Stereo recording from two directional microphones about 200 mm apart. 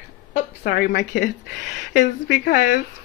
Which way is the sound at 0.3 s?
50° left (ahead or behind).